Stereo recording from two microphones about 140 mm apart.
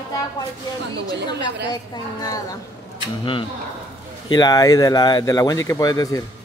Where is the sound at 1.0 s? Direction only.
30° left (ahead or behind).